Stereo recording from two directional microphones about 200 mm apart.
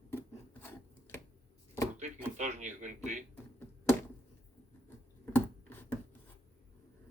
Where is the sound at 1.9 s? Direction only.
35° right (ahead or behind).